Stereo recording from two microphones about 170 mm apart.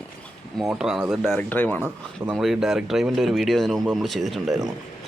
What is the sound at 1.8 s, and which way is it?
Speech, 5° right (ahead or behind).